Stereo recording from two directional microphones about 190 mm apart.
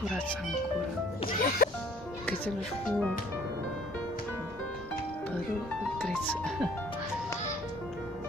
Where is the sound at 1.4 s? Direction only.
50° left (ahead or behind).